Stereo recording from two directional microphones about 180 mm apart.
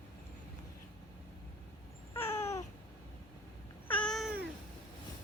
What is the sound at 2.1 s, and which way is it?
Babbling, 15° left (ahead or behind).